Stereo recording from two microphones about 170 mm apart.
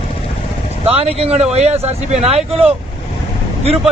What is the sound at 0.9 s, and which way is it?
Speech, 35° right (ahead or behind).